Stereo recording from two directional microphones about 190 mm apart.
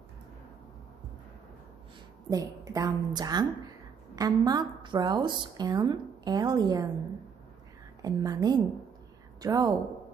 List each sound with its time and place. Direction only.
2.2 s a woman's voice: 20° right (ahead or behind)
8.0 s a woman's voice: 20° right (ahead or behind)